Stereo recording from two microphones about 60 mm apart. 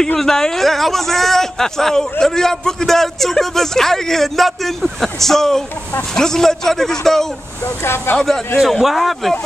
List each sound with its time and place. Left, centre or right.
0.0 s speech: centre
7.6 s speech: left
8.5 s speech: centre